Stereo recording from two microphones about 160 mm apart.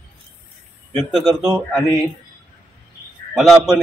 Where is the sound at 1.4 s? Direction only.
Centre (ahead or behind).